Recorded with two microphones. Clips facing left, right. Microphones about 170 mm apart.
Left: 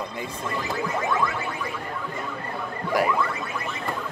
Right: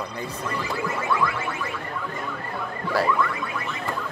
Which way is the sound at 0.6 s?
20° left (ahead or behind).